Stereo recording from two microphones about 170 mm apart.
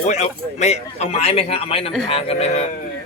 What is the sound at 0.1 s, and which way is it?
Speech, 40° left (ahead or behind).